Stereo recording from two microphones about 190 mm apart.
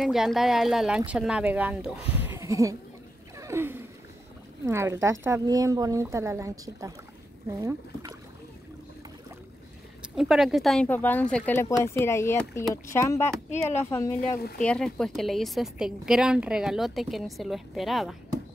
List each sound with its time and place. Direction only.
0.0 s a woman's voice: centre (ahead or behind); by 2.8 s 15° right (ahead or behind)
3.3 s a sound: 15° right (ahead or behind)
4.6 s speech: 15° right (ahead or behind)
10.1 s a woman's voice: centre (ahead or behind)